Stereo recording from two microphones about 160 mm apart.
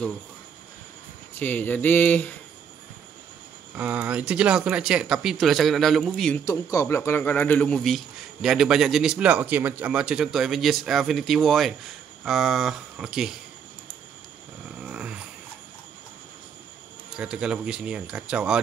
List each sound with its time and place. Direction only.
1.4 s mantra: 10° left (ahead or behind)
3.7 s a man's voice: 10° right (ahead or behind)
6.4 s a man's voice: 20° left (ahead or behind); by 13.4 s 5° right (ahead or behind)
14.8 s a sound: 5° right (ahead or behind)
17.2 s a man's voice: 5° right (ahead or behind)